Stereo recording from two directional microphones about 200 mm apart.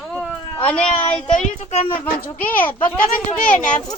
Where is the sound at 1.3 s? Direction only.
35° left (ahead or behind).